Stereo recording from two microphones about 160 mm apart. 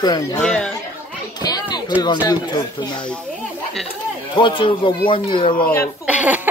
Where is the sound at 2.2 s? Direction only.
25° left (ahead or behind).